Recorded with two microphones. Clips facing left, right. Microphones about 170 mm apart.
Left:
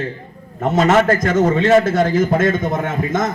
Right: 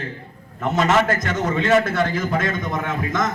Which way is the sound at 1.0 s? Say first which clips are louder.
Left 7 dB; 30° left (ahead or behind).